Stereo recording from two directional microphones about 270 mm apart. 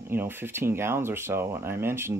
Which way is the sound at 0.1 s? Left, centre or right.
Centre.